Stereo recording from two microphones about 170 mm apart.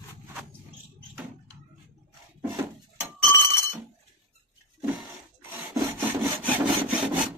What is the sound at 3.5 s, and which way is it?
Chink, 15° left (ahead or behind).